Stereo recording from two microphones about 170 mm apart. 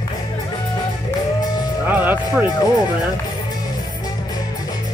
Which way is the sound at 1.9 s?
10° right (ahead or behind).